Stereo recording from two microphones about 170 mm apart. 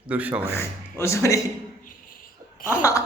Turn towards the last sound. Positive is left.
turn(degrees=20)  # may be behind; listen again after turning